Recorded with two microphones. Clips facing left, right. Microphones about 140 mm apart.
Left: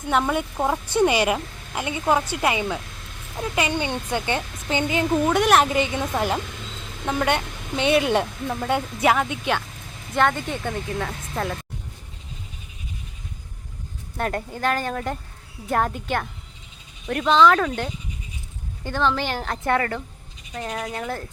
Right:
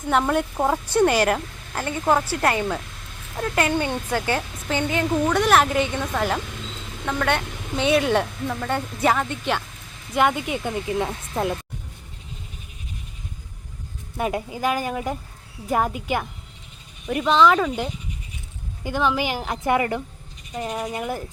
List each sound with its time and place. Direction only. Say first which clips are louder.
0.1 s a woman's voice: right 1 dB; centre (ahead or behind)
0.9 s a woman's voice: right 1 dB; 10° left (ahead or behind)
3.7 s a woman's voice: right 2 dB; centre (ahead or behind)
7.0 s a woman's voice: left 1 dB; 15° left (ahead or behind)
7.3 s a woman's voice: even; centre (ahead or behind)
10.2 s speech: right 1 dB; 10° right (ahead or behind)
14.2 s a woman's voice: right 1 dB; 5° right (ahead or behind)